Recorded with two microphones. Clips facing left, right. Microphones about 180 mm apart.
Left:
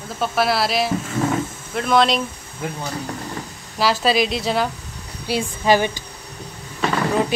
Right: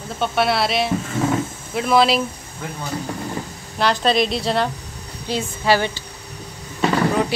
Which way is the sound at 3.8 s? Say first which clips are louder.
Even; 5° left (ahead or behind).